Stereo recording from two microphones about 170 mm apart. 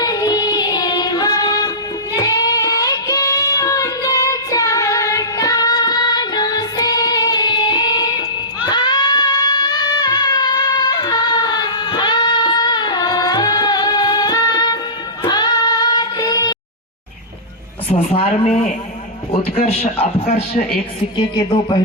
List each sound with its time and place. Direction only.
0.0 s music: 20° left (ahead or behind)
15.2 s child singing: 25° left (ahead or behind)
17.9 s a man's voice: 35° left (ahead or behind)
21.2 s music: 30° left (ahead or behind)